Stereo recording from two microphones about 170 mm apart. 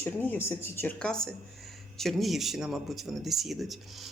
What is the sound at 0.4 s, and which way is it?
A woman's voice, 15° left (ahead or behind).